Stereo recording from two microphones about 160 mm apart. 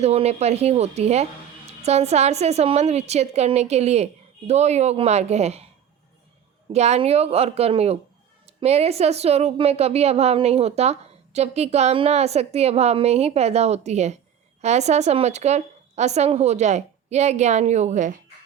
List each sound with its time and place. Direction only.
0.0 s a woman's voice: 40° right (ahead or behind)
6.7 s a woman's voice: 45° right (ahead or behind)